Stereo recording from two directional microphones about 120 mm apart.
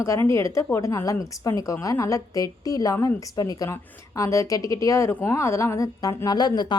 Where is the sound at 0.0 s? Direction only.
25° left (ahead or behind).